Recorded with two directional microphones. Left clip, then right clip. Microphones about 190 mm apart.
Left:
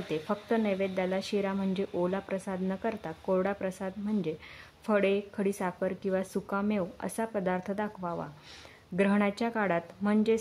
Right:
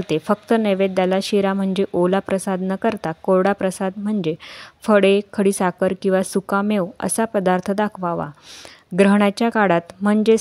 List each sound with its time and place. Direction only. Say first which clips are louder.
0.1 s speech: right 12 dB; 45° right (ahead or behind)